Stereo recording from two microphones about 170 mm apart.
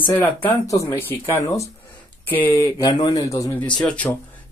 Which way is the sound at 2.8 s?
25° left (ahead or behind).